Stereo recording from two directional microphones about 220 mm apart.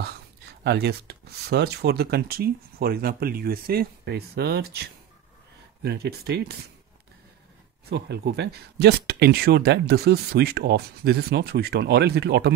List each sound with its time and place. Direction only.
0.7 s speech: 50° right (ahead or behind)
7.9 s speech: 50° right (ahead or behind)